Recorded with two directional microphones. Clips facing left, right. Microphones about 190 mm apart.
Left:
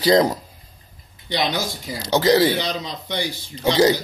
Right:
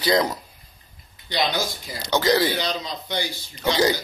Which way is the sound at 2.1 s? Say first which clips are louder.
Left 4 dB; 25° left (ahead or behind).